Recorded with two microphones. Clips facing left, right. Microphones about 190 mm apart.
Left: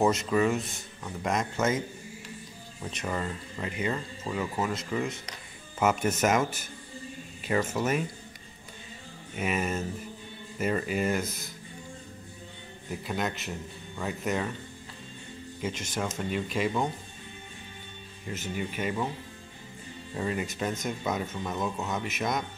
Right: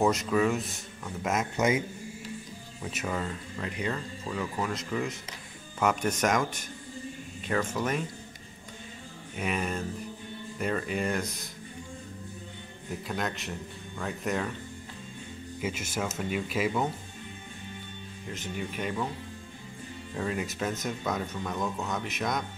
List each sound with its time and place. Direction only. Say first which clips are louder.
0.0 s speech: left 1 dB; centre (ahead or behind)
9.3 s speech: left 2 dB; 5° left (ahead or behind)
13.0 s speech: left 2 dB; centre (ahead or behind)
15.6 s speech: even; 5° right (ahead or behind)
18.3 s speech: left 2 dB; 5° left (ahead or behind)
20.2 s speech: left 1 dB; centre (ahead or behind)